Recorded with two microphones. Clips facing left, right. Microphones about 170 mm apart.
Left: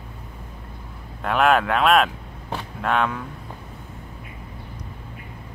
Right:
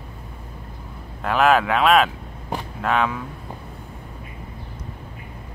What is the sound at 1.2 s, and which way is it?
Speech, centre (ahead or behind).